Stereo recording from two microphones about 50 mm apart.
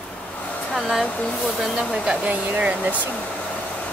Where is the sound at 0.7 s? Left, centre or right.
Centre.